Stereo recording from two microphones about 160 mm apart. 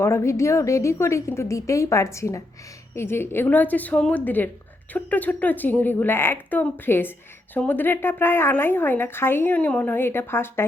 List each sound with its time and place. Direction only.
0.0 s speech: 15° left (ahead or behind)